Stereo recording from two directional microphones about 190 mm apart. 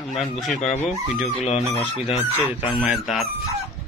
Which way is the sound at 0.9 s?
35° left (ahead or behind).